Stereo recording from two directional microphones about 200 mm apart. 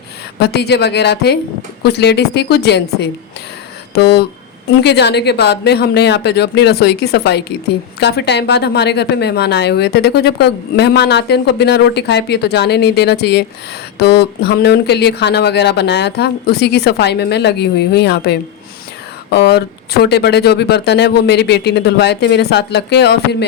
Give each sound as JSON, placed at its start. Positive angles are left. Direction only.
{"t": 0.3, "sound": "a woman's voice", "side_deg": 55}